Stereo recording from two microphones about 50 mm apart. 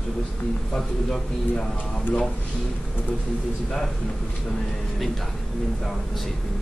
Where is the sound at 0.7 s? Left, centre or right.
Centre.